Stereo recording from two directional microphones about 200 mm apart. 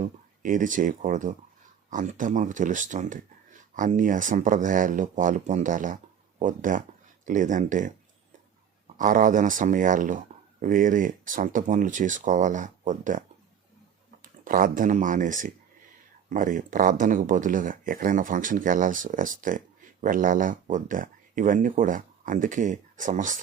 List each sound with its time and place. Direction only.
0.0 s speech: 40° right (ahead or behind)
9.0 s speech: 40° right (ahead or behind)